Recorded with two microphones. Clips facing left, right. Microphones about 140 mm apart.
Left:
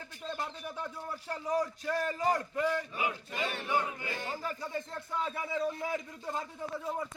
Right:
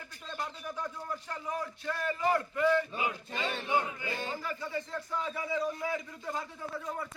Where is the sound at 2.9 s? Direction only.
30° right (ahead or behind).